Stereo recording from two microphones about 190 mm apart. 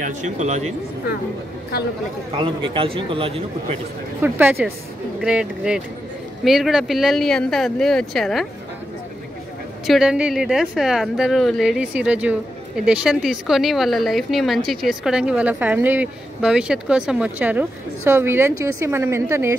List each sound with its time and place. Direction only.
0.0 s speech: 40° right (ahead or behind)
2.3 s a man's voice: 25° right (ahead or behind)
4.2 s a woman's voice: 10° right (ahead or behind)
9.8 s a woman's voice: 5° right (ahead or behind)